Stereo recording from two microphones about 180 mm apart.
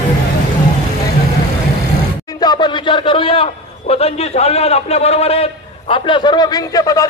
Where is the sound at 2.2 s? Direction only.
25° left (ahead or behind).